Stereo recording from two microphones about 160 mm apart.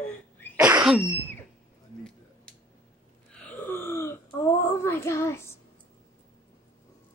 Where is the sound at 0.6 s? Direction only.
5° right (ahead or behind).